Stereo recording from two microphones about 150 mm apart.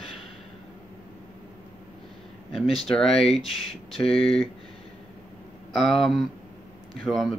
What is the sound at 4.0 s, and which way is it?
Speech, 40° left (ahead or behind).